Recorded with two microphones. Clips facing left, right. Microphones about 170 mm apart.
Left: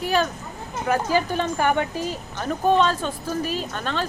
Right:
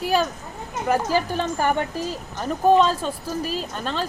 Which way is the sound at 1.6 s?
35° right (ahead or behind).